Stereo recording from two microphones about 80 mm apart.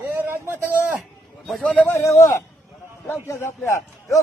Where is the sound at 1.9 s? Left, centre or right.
Left.